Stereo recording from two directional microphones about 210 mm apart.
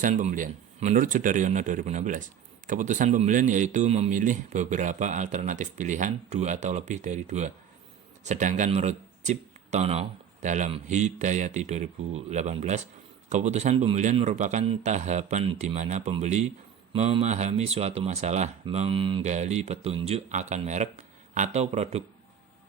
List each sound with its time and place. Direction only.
0.0 s speech: 35° right (ahead or behind)